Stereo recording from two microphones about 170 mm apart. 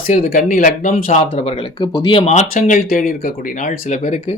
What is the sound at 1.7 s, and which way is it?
Speech, 25° left (ahead or behind).